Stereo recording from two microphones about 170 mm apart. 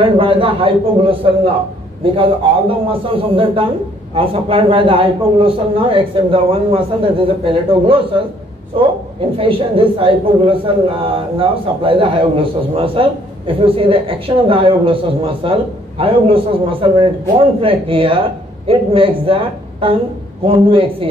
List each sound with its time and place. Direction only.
0.0 s a man's voice: 30° right (ahead or behind)
9.4 s a man's voice: 30° right (ahead or behind)